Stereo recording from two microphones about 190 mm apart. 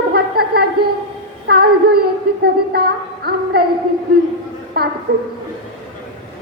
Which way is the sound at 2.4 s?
55° right (ahead or behind).